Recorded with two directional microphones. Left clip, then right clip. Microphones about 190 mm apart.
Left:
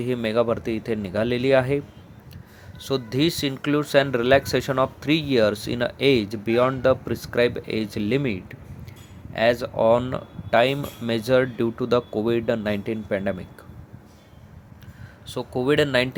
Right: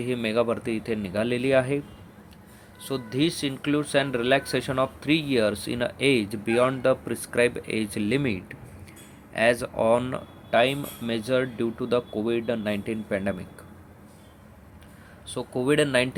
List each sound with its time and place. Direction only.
0.0 s speech: 15° left (ahead or behind)
2.8 s speech: 20° left (ahead or behind)
15.3 s speech: 10° left (ahead or behind)